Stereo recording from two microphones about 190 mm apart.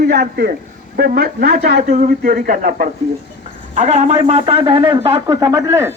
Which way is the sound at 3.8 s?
35° right (ahead or behind).